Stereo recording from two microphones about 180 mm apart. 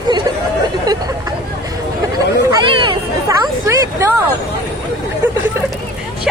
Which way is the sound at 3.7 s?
15° right (ahead or behind).